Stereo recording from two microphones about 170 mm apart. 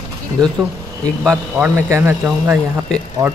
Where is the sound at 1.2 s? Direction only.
10° right (ahead or behind).